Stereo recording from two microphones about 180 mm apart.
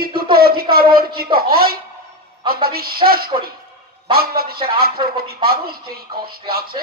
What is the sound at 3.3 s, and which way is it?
Speech, 25° right (ahead or behind).